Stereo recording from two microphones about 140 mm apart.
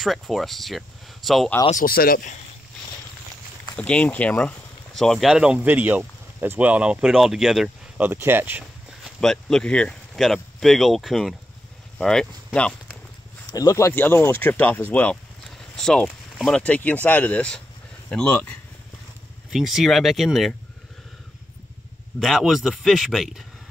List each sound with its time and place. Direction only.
0.0 s speech: centre (ahead or behind)
1.7 s speech: 80° left
3.7 s speech: 10° left (ahead or behind)
8.0 s speech: 15° right (ahead or behind)
9.2 s speech: 5° left (ahead or behind)
13.5 s speech: 25° left (ahead or behind); by 20.5 s centre (ahead or behind)
22.2 s speech: centre (ahead or behind)